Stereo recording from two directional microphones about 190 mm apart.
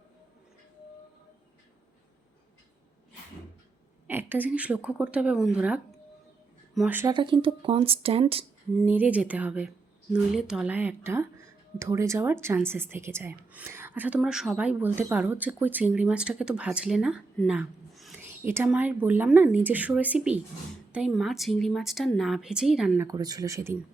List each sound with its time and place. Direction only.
4.0 s speech: 10° right (ahead or behind)
7.1 s speech: 25° right (ahead or behind)
8.8 s speech: 10° right (ahead or behind)
18.4 s a woman's voice: 10° right (ahead or behind)
23.0 s speech: 20° right (ahead or behind)